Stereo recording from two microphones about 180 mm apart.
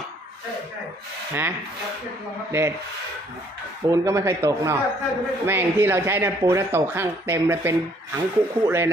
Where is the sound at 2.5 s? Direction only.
15° right (ahead or behind).